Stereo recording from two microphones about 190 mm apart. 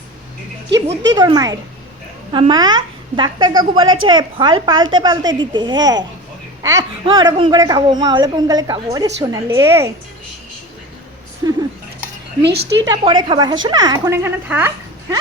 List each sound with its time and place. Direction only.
0.7 s speech: 70° right (ahead or behind)
1.1 s a woman's voice: 20° right (ahead or behind)
12.4 s a woman's voice: 60° right (ahead or behind)
12.8 s a woman's voice: 20° right (ahead or behind)